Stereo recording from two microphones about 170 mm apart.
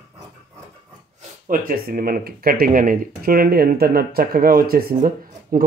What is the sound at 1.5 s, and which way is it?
Speech, 55° right (ahead or behind).